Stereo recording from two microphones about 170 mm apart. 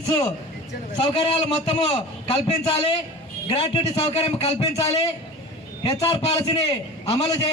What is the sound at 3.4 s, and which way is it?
A man's voice, 35° left (ahead or behind).